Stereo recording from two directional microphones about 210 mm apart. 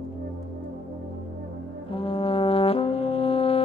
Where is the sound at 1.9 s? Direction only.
25° left (ahead or behind).